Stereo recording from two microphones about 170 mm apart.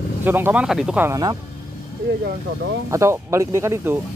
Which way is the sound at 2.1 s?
80° right.